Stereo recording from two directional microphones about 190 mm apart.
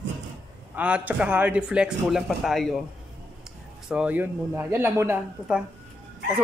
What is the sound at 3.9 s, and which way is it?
Speech, 5° right (ahead or behind).